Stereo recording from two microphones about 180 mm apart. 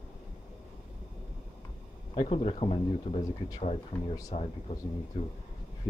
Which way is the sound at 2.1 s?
35° left (ahead or behind).